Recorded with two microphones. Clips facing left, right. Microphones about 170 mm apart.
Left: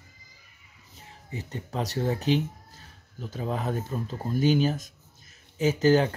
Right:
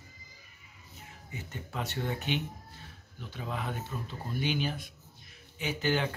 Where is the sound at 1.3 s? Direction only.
35° left (ahead or behind).